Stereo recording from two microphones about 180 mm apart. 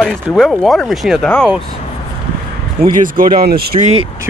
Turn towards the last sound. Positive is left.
turn(degrees=-60)  # may be behind; listen again after turning